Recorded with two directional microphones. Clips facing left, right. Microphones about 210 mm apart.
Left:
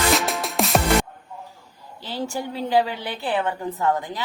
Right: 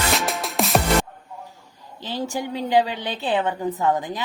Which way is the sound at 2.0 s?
15° right (ahead or behind).